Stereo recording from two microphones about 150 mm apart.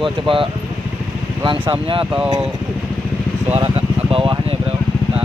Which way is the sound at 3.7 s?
35° right (ahead or behind).